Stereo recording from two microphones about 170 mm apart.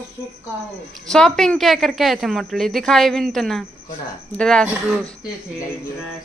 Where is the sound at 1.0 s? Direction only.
5° left (ahead or behind).